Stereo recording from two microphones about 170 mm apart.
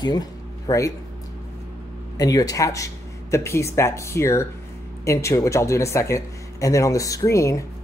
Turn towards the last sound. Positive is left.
turn(degrees=20)  # may be behind; listen again after turning